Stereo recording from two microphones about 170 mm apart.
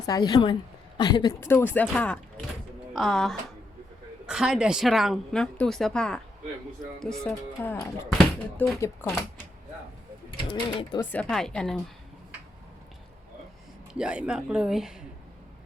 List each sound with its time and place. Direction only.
0.0 s a woman's voice: 25° left (ahead or behind)
1.4 s speech: 15° left (ahead or behind)
10.5 s a woman's voice: 25° left (ahead or behind)
11.1 s speech: 5° left (ahead or behind)
14.0 s speech: 5° right (ahead or behind)